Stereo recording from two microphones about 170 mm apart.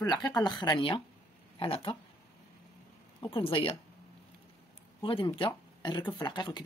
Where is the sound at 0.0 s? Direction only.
20° left (ahead or behind).